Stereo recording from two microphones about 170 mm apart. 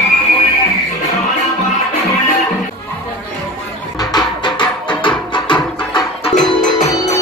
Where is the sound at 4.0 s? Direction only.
25° left (ahead or behind).